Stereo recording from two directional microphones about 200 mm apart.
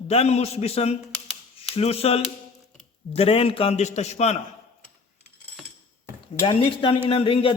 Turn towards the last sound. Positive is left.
turn(degrees=30)  # may be behind; listen again after turning